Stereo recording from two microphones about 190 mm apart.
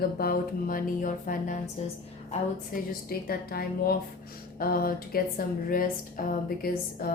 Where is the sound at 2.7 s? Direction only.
50° left (ahead or behind).